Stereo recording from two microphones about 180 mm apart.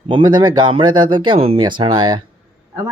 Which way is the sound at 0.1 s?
25° right (ahead or behind).